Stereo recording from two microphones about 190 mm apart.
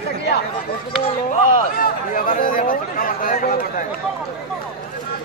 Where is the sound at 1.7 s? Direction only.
45° left (ahead or behind).